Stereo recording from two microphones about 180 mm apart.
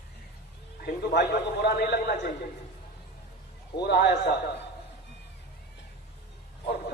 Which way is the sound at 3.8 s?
65° left (ahead or behind).